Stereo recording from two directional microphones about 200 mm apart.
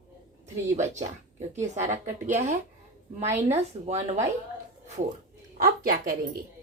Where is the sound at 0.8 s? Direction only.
35° right (ahead or behind).